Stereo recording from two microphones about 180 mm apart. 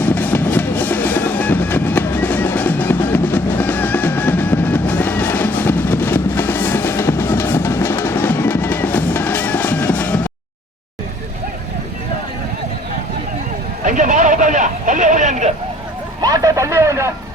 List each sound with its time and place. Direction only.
0.0 s music: 10° left (ahead or behind)
13.8 s vehicle: 45° right (ahead or behind)
16.2 s vehicle: 20° right (ahead or behind)